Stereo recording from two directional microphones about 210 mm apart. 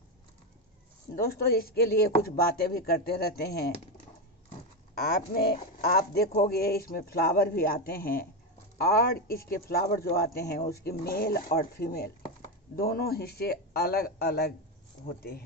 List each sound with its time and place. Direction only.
1.2 s speech: 45° left (ahead or behind)
5.9 s speech: 45° left (ahead or behind)